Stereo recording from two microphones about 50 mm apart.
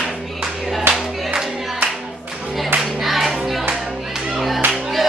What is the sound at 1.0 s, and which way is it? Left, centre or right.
Music, centre.